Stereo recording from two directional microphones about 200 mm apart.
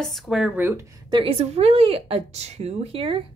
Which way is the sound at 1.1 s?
30° right (ahead or behind).